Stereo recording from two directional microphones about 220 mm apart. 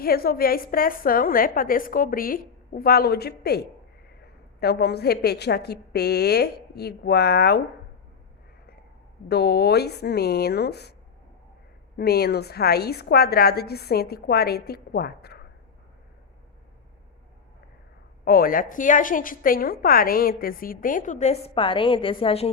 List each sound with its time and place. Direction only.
0.0 s a woman's voice: 45° left (ahead or behind)
9.3 s a woman's voice: 45° left (ahead or behind)
11.9 s a woman's voice: 45° left (ahead or behind)
18.3 s a woman's voice: 40° left (ahead or behind); by 22.4 s 25° left (ahead or behind)